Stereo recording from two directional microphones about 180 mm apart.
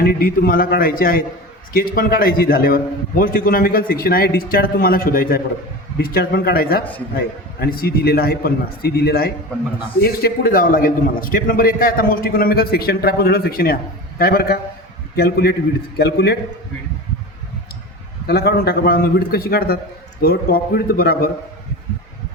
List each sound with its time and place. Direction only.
0.0 s a man's voice: 55° left (ahead or behind)
18.3 s a man's voice: 60° left (ahead or behind)